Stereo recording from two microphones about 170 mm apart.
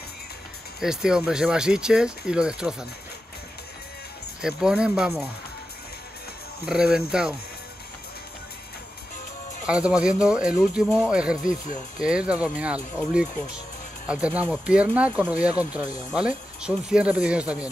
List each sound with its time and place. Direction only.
0.7 s speech: 5° right (ahead or behind)
4.4 s speech: 5° right (ahead or behind)
6.7 s speech: 5° right (ahead or behind)
9.7 s speech: 5° right (ahead or behind)
11.4 s speech: 50° left (ahead or behind)
12.0 s speech: 5° right (ahead or behind)
14.0 s speech: 5° right (ahead or behind)